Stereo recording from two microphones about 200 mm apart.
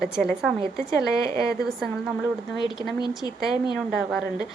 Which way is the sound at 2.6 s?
20° left (ahead or behind).